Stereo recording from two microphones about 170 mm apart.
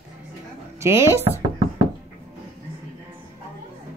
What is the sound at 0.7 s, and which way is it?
Speech, 15° right (ahead or behind).